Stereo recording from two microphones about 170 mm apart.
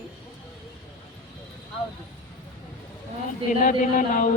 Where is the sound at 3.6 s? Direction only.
50° left (ahead or behind).